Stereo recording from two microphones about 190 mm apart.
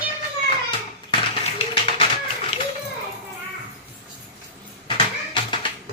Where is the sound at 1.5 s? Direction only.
30° left (ahead or behind).